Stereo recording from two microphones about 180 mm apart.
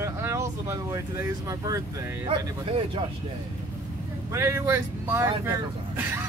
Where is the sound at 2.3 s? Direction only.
30° right (ahead or behind).